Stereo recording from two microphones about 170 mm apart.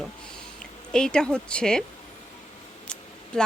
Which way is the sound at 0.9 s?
5° left (ahead or behind).